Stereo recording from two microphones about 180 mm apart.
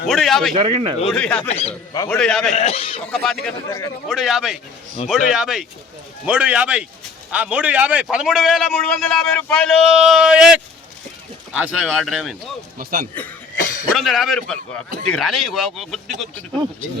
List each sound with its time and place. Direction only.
0.1 s a man's voice: centre (ahead or behind)
0.5 s speech: 30° right (ahead or behind)
1.0 s a man's voice: 5° left (ahead or behind)
1.5 s a man's voice: 35° left (ahead or behind)
2.0 s a man's voice: 5° left (ahead or behind)
2.5 s a man's voice: 35° left (ahead or behind)
3.1 s a man's voice: centre (ahead or behind)
3.7 s a man's voice: 20° left (ahead or behind)
4.1 s a man's voice: centre (ahead or behind)
5.0 s a man's voice: 35° left (ahead or behind)
5.3 s a man's voice: 5° right (ahead or behind)
12.8 s speech: 55° right (ahead or behind)
13.9 s a man's voice: centre (ahead or behind)